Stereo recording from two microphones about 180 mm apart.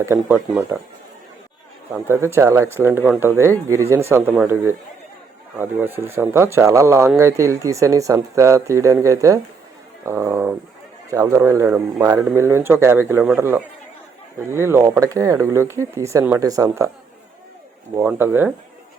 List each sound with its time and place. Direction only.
0.0 s speech: 15° right (ahead or behind)
1.9 s speech: 15° right (ahead or behind)
17.9 s speech: 10° right (ahead or behind)